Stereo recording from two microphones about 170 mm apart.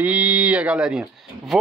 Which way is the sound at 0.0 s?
5° right (ahead or behind).